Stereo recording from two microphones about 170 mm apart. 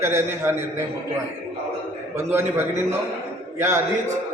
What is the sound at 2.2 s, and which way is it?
A man's voice, 15° right (ahead or behind).